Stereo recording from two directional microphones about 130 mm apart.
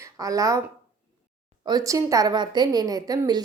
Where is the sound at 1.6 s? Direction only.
30° right (ahead or behind).